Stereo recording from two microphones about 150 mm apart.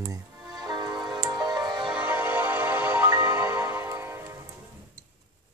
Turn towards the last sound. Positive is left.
turn(degrees=-20)  # may be behind; listen again after turning